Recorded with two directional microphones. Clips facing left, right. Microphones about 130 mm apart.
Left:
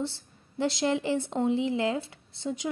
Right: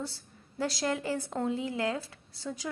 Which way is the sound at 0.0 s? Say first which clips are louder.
Left 6 dB; 25° left (ahead or behind).